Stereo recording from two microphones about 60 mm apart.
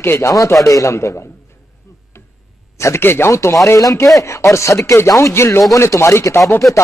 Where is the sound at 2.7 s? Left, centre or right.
Left.